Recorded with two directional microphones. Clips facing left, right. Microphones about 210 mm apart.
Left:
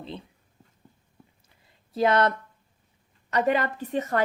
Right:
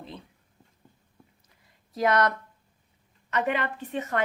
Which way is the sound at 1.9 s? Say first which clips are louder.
Left 2 dB; 30° left (ahead or behind).